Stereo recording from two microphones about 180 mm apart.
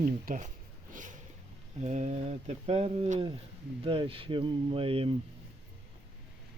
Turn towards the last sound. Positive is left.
turn(degrees=-30)  # may be behind; listen again after turning